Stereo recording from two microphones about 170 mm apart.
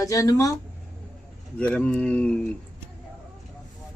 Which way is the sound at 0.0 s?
20° left (ahead or behind).